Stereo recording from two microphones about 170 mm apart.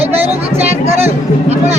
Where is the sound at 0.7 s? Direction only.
35° right (ahead or behind).